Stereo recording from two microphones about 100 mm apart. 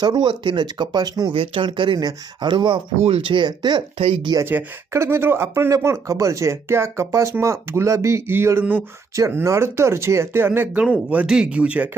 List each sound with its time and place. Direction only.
0.0 s speech: 45° right (ahead or behind)
1.3 s speech: 60° right (ahead or behind)
4.4 s speech: 25° right (ahead or behind)